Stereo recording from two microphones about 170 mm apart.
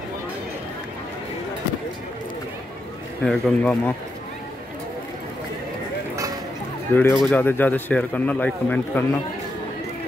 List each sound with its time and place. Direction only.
3.3 s speech: 5° left (ahead or behind)
6.9 s a man's voice: 10° left (ahead or behind)